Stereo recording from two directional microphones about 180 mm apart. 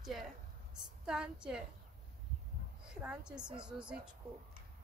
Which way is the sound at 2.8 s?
5° right (ahead or behind).